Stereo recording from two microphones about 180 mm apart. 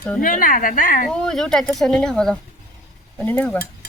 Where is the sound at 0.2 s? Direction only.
50° left (ahead or behind).